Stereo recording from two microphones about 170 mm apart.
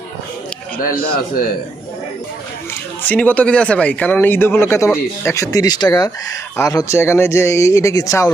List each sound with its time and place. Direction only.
0.8 s a man's voice: 55° left (ahead or behind)
3.1 s speech: 10° left (ahead or behind)